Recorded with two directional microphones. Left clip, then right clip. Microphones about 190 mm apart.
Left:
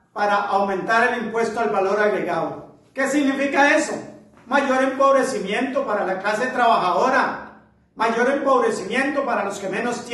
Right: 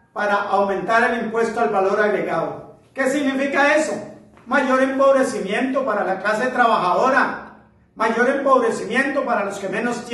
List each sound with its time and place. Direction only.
0.1 s a man's voice: 15° left (ahead or behind)